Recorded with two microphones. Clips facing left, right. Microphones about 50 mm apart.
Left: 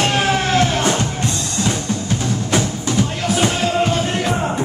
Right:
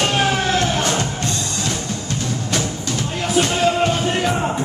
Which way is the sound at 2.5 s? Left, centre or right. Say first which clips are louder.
Left 6 dB; centre.